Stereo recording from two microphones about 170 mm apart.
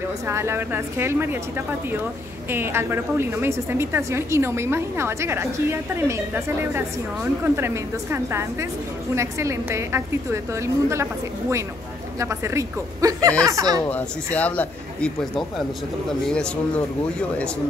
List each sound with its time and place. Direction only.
0.3 s a woman's voice: 15° right (ahead or behind)
2.5 s a woman's voice: 15° right (ahead or behind)
12.2 s a woman's voice: 15° right (ahead or behind)
13.8 s speech: 10° left (ahead or behind)